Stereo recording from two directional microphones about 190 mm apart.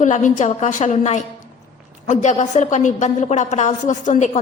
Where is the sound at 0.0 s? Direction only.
40° left (ahead or behind).